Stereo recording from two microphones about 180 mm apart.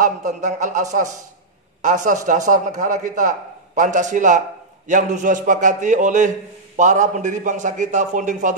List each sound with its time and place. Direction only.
0.0 s a man's voice: 45° right (ahead or behind)